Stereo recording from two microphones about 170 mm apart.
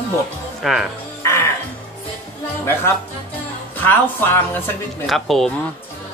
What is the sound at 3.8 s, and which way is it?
Speech, 10° left (ahead or behind).